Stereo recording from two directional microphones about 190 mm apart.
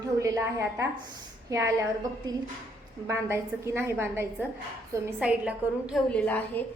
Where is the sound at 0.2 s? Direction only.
15° right (ahead or behind).